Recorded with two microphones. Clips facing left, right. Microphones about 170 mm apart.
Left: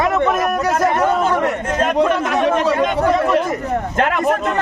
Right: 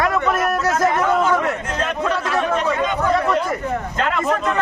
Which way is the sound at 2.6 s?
60° left (ahead or behind).